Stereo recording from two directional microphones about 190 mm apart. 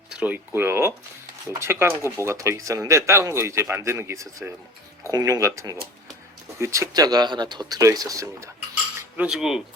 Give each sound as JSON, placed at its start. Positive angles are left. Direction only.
{"t": 0.1, "sound": "speech", "side_deg": -5}
{"t": 9.0, "sound": "cutlery", "side_deg": -5}